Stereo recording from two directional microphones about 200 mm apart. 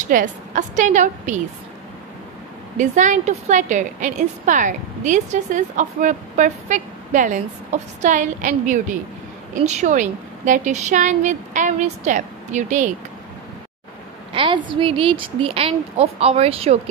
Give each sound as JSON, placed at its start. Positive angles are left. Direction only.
{"t": 0.1, "sound": "a woman's voice", "side_deg": -40}
{"t": 2.8, "sound": "a woman's voice", "side_deg": -35}
{"t": 14.3, "sound": "a woman's voice", "side_deg": -25}